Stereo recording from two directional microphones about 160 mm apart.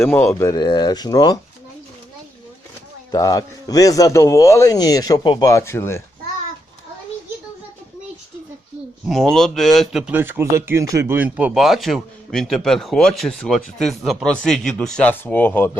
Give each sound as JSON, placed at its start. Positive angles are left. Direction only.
{"t": 0.0, "sound": "speech", "side_deg": 10}
{"t": 0.4, "sound": "a man's voice", "side_deg": 25}
{"t": 3.1, "sound": "a man's voice", "side_deg": 20}
{"t": 9.0, "sound": "speech", "side_deg": 5}
{"t": 10.1, "sound": "speech", "side_deg": -15}